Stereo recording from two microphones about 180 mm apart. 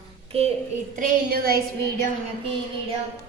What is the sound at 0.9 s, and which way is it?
Speech, 50° right (ahead or behind).